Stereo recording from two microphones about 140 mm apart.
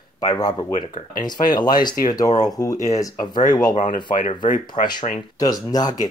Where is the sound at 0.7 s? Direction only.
60° left (ahead or behind).